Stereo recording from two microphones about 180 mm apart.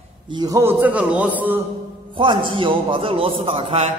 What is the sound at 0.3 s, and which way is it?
A man's voice, 20° right (ahead or behind).